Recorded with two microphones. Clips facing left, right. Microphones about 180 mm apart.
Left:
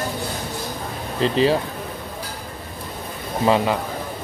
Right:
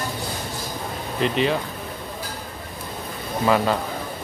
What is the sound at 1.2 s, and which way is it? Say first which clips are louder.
Speech: left 4 dB; 35° left (ahead or behind).